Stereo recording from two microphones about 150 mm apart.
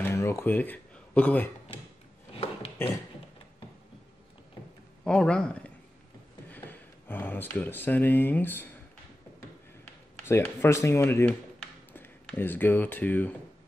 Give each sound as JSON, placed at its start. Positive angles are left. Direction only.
{"t": 0.0, "sound": "a sound", "side_deg": 20}
{"t": 5.0, "sound": "speech", "side_deg": 5}
{"t": 10.2, "sound": "speech", "side_deg": 15}